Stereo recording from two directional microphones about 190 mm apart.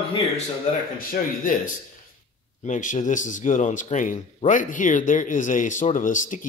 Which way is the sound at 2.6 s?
40° left (ahead or behind).